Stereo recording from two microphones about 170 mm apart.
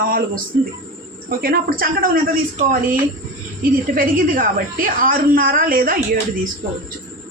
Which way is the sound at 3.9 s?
55° right (ahead or behind).